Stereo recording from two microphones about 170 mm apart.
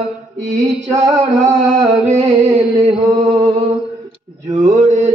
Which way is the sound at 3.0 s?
40° right (ahead or behind).